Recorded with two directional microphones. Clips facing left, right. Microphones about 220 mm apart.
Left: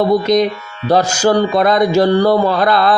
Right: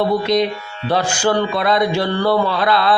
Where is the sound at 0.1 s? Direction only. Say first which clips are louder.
Left 4 dB; 45° left (ahead or behind).